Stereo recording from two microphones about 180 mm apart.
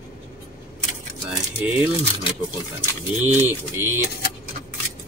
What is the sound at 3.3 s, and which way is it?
Speech, 10° right (ahead or behind).